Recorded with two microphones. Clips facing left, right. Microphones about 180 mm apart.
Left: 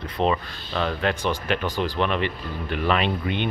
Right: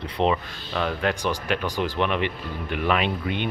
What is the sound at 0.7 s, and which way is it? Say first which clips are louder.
Speech: even; 5° right (ahead or behind).